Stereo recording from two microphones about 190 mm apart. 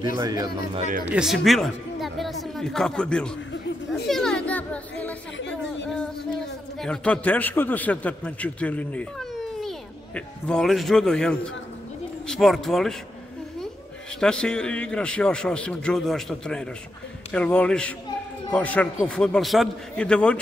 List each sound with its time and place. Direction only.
0.0 s speech: 20° right (ahead or behind)
0.7 s speech: 40° right (ahead or behind)
1.0 s a man's voice: 5° right (ahead or behind)
6.8 s a man's voice: 5° left (ahead or behind)
14.2 s a man's voice: 5° left (ahead or behind)